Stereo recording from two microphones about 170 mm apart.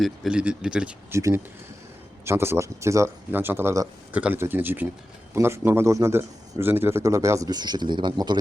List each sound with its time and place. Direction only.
0.0 s speech: 5° right (ahead or behind)
2.2 s a man's voice: 15° right (ahead or behind)